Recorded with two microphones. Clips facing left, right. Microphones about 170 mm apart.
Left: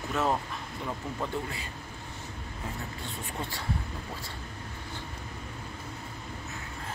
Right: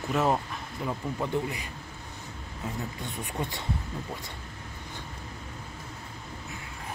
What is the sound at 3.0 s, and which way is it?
Speech, 20° right (ahead or behind).